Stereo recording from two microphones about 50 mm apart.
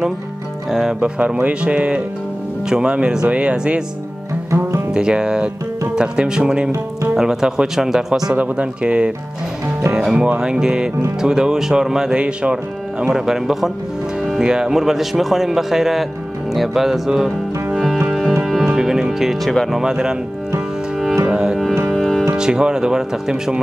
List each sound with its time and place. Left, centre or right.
0.7 s speech: centre
1.0 s speech: right
4.9 s speech: centre
8.4 s speech: right; by 16.1 s centre
16.5 s music: centre
18.8 s music: centre
19.8 s speech: centre
21.3 s music: centre
21.9 s music: centre
22.3 s speech: centre